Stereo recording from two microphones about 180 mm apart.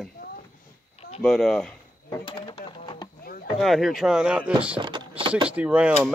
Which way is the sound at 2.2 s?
25° left (ahead or behind).